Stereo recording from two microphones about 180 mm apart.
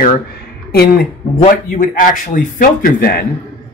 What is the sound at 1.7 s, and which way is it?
Speech, 50° left (ahead or behind).